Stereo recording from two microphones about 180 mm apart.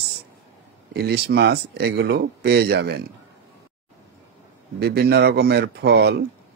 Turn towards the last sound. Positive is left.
turn(degrees=-65)  # may be behind; listen again after turning